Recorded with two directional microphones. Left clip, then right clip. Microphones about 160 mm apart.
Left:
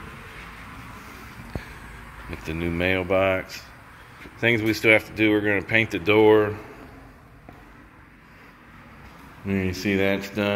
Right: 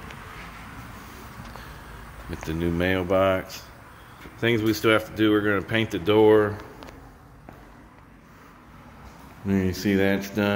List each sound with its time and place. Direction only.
2.4 s speech: 20° right (ahead or behind)
9.5 s speech: 25° right (ahead or behind)